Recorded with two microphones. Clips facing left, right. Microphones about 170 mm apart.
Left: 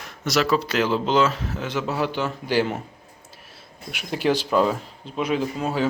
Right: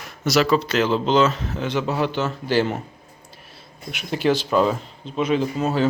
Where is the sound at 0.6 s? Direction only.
10° left (ahead or behind).